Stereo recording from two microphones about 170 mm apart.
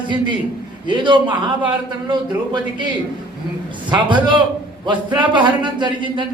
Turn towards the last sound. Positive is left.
turn(degrees=-30)  # may be behind; listen again after turning